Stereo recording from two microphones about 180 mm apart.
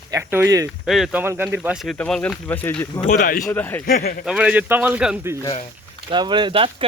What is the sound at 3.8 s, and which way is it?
Speech, 60° left (ahead or behind).